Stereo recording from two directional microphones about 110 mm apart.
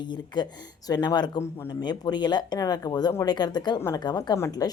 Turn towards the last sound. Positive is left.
turn(degrees=35)  # may be behind; listen again after turning